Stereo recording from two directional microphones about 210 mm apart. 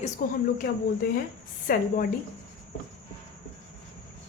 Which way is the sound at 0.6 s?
45° left (ahead or behind).